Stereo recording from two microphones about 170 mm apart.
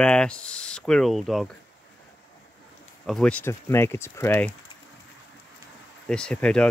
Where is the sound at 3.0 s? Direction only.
5° left (ahead or behind).